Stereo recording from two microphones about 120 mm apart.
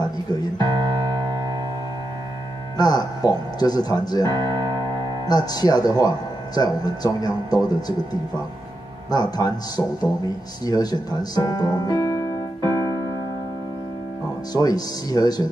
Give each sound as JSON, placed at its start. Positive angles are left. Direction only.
{"t": 0.0, "sound": "speech", "side_deg": 35}
{"t": 2.8, "sound": "speech", "side_deg": 35}
{"t": 14.5, "sound": "speech", "side_deg": 30}